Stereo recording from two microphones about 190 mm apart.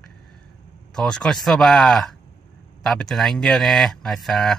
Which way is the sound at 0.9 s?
5° left (ahead or behind).